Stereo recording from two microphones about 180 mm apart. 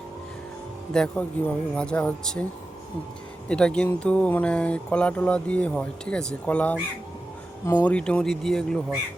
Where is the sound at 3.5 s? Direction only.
5° left (ahead or behind).